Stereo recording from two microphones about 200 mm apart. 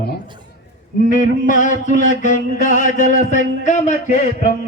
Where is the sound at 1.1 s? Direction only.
40° left (ahead or behind).